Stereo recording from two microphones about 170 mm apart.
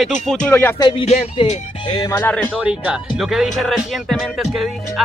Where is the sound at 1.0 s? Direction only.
40° left (ahead or behind).